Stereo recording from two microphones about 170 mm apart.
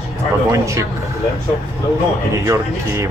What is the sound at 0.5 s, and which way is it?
Speech, 15° right (ahead or behind).